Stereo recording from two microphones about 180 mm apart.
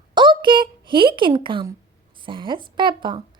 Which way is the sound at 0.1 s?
25° right (ahead or behind).